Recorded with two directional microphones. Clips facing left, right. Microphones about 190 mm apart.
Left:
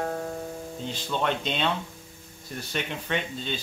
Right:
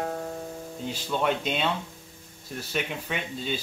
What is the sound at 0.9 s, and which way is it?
Speech, 10° right (ahead or behind).